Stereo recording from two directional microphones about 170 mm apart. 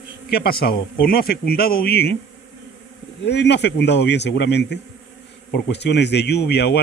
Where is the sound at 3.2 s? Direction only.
90° left.